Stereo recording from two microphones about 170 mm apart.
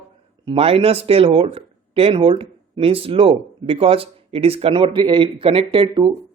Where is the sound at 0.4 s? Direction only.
35° right (ahead or behind).